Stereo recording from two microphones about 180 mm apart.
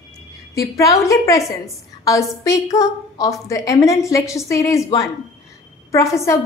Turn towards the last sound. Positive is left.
turn(degrees=15)  # may be behind; listen again after turning